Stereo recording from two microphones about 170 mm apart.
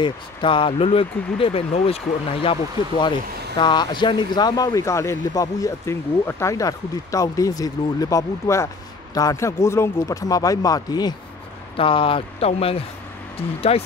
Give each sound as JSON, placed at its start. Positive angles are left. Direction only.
{"t": 0.0, "sound": "speech", "side_deg": 30}